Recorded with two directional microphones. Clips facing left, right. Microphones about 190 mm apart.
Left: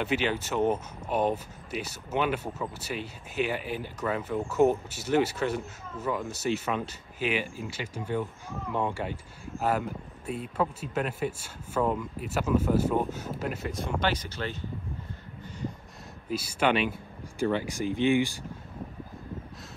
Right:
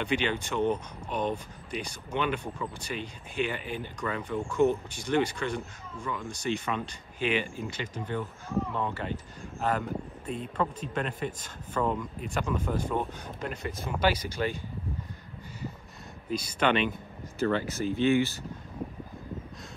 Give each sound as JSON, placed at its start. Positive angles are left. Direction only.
{"t": 0.0, "sound": "speech", "side_deg": 5}
{"t": 16.3, "sound": "speech", "side_deg": 5}